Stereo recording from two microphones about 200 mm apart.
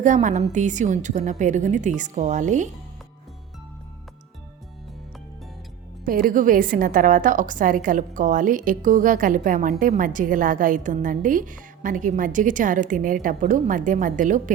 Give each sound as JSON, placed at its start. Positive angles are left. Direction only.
{"t": 0.0, "sound": "a woman's voice", "side_deg": -40}
{"t": 6.1, "sound": "a woman's voice", "side_deg": -45}